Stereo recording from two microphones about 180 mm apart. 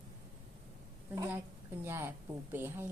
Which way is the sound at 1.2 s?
10° right (ahead or behind).